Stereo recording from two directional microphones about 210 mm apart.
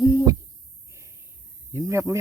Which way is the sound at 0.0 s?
20° right (ahead or behind).